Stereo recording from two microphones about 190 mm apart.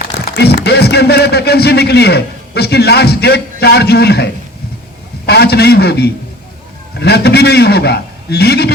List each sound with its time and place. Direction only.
0.3 s a man's voice: 60° left (ahead or behind)